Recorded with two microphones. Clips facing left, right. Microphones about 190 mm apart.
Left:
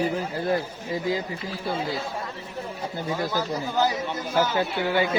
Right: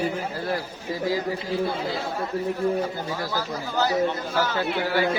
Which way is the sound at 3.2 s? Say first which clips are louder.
Left 2 dB; 20° left (ahead or behind).